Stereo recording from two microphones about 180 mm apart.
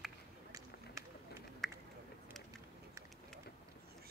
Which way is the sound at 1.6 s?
Centre (ahead or behind).